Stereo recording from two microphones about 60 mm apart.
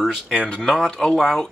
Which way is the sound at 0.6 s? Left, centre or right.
Centre.